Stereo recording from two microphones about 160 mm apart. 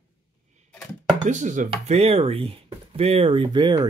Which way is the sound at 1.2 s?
50° right (ahead or behind).